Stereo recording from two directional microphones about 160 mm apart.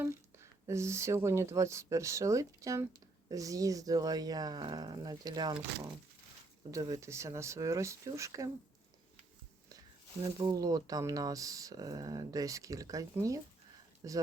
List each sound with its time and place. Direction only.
0.0 s speech: 15° right (ahead or behind)
6.7 s speech: 20° right (ahead or behind)
10.3 s speech: 25° right (ahead or behind)